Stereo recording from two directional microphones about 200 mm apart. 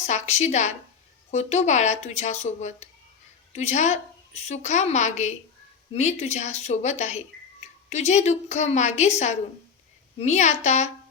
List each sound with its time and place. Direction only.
0.0 s a woman's voice: 35° left (ahead or behind)